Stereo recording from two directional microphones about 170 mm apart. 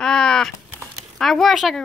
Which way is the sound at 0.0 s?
5° left (ahead or behind).